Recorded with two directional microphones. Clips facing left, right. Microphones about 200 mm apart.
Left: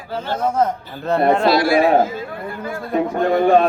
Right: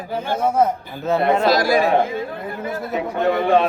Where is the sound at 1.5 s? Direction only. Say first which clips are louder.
Left 2 dB; 40° right (ahead or behind).